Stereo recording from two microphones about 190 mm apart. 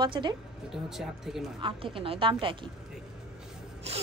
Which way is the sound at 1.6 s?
25° right (ahead or behind).